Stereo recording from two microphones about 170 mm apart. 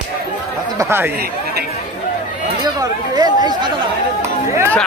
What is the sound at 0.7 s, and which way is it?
Speech, 15° right (ahead or behind).